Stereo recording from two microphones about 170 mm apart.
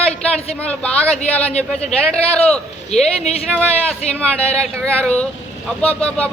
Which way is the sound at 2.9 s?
40° left (ahead or behind).